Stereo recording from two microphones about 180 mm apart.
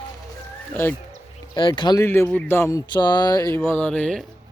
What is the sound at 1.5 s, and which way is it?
Speech, 25° left (ahead or behind).